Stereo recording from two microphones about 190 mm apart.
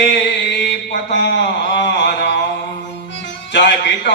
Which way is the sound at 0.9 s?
60° left (ahead or behind).